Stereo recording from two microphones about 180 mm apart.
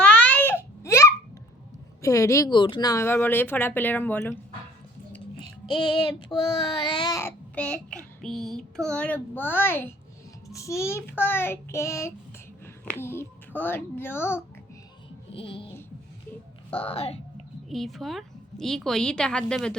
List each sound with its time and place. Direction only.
0.0 s babbling: 10° left (ahead or behind)
2.0 s speech: 20° left (ahead or behind)
6.6 s a child's voice: 25° left (ahead or behind)
15.3 s a child's voice: 30° left (ahead or behind)
16.7 s a child's voice: 30° left (ahead or behind)
17.7 s a woman's voice: centre (ahead or behind)